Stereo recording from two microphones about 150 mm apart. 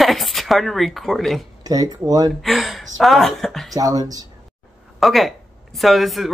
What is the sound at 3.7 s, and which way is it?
Speech, 25° right (ahead or behind).